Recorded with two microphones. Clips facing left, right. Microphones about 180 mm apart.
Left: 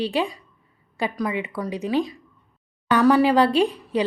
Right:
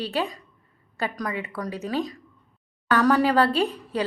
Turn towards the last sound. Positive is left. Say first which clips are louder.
# left 4 dB
turn(degrees=15)  # may be behind; listen again after turning